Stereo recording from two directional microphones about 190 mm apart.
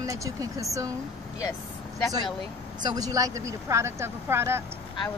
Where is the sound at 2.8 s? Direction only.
20° right (ahead or behind).